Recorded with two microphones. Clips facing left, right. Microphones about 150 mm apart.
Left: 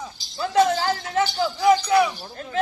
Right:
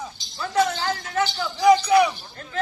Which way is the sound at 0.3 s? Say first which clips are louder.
Left 3 dB; 25° left (ahead or behind).